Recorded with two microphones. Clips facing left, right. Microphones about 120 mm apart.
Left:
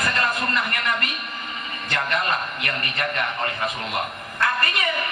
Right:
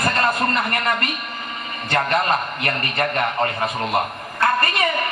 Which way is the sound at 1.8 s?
35° right (ahead or behind).